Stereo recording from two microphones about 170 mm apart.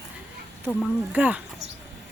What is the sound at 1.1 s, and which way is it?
Speech, 10° right (ahead or behind).